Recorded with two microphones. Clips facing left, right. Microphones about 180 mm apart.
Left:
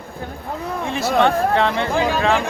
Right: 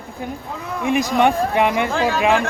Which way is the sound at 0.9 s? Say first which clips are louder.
Right 1 dB; 15° right (ahead or behind).